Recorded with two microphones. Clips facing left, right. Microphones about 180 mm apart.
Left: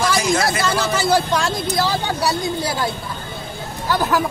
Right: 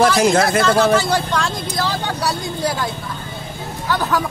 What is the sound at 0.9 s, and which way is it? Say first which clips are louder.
Speech: even; 5° left (ahead or behind).